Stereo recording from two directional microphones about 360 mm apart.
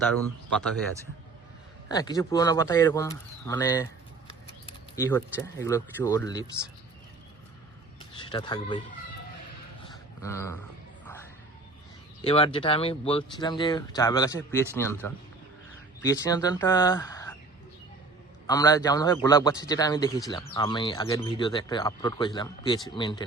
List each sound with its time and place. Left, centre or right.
1.9 s speech: centre
4.6 s a sound: centre
5.4 s speech: centre
8.2 s speech: centre
9.8 s a sound: centre
11.0 s music: centre
12.2 s speech: centre
16.0 s speech: centre
18.4 s speech: centre